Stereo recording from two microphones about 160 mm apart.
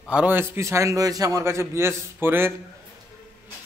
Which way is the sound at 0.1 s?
10° right (ahead or behind).